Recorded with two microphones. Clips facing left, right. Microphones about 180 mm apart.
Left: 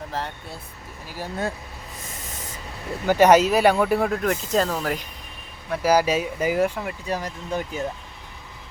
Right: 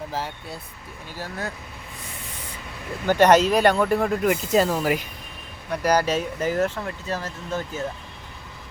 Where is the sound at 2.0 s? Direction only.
45° left (ahead or behind).